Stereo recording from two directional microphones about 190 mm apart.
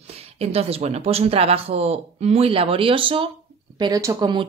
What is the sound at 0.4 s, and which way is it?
Speech, 35° right (ahead or behind).